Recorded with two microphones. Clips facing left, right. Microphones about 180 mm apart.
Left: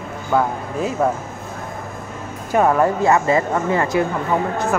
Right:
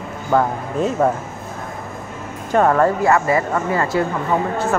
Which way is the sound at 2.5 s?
10° left (ahead or behind).